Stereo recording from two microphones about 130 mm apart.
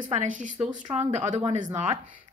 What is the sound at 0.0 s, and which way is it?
Speech, 75° right (ahead or behind).